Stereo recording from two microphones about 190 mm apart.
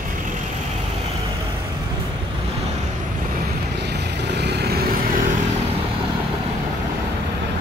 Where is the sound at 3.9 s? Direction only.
65° right (ahead or behind).